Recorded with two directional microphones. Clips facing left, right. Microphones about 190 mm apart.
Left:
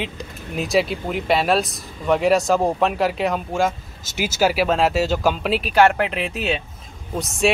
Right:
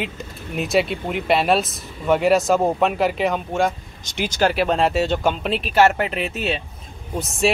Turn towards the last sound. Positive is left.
turn(degrees=0)  # may be behind; listen again after turning